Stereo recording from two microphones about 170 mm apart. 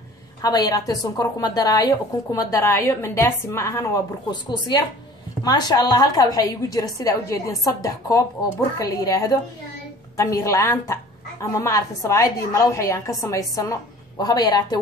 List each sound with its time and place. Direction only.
0.4 s a woman's voice: 25° left (ahead or behind)